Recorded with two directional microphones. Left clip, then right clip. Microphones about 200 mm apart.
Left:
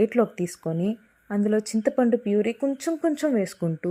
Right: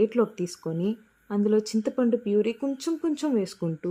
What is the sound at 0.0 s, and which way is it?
Speech, 10° left (ahead or behind).